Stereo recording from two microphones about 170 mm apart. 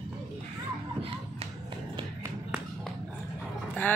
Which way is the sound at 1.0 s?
30° right (ahead or behind).